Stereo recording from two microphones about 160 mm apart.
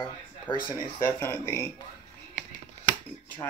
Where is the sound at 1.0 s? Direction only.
15° left (ahead or behind).